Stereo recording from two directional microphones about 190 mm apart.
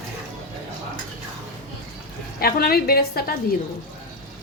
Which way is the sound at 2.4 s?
55° left (ahead or behind).